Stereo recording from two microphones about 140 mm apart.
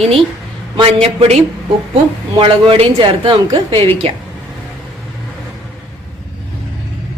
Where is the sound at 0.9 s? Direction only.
50° right (ahead or behind).